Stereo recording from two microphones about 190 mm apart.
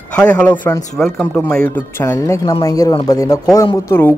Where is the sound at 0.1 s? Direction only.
5° left (ahead or behind).